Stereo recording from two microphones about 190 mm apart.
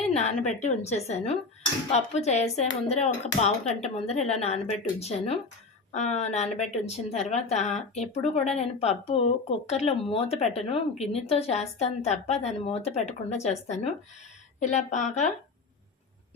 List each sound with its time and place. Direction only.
0.1 s speech: 35° left (ahead or behind)